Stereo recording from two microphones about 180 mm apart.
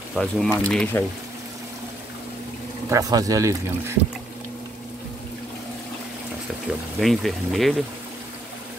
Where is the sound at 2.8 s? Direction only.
20° right (ahead or behind).